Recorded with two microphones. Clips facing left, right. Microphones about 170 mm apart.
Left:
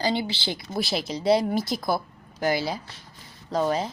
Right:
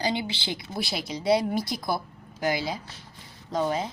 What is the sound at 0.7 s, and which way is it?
Speech, 25° left (ahead or behind).